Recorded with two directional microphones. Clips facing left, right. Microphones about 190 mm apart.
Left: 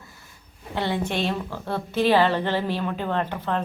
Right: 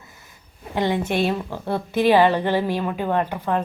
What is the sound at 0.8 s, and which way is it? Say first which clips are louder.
A woman's voice: right 4 dB; 15° right (ahead or behind).